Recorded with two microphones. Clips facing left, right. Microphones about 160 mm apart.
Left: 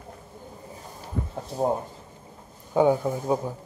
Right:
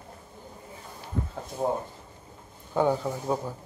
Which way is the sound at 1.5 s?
35° left (ahead or behind).